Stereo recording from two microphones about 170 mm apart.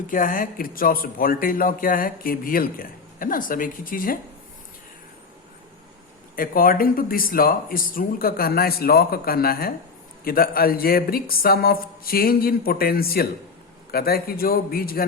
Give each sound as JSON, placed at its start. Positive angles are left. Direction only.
{"t": 0.1, "sound": "speech", "side_deg": 55}
{"t": 6.3, "sound": "speech", "side_deg": 55}